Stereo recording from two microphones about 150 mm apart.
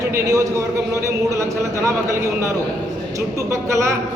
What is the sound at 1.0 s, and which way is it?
Speech, 20° right (ahead or behind).